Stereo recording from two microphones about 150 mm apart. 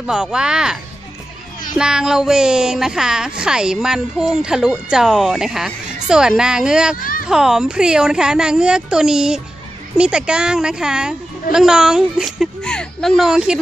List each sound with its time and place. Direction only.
0.0 s speech: 5° right (ahead or behind)
1.8 s speech: 5° right (ahead or behind)
7.0 s a sound: 70° left (ahead or behind)
7.2 s speech: 5° right (ahead or behind)